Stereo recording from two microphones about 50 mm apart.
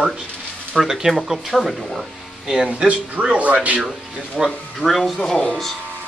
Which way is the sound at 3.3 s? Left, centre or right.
Right.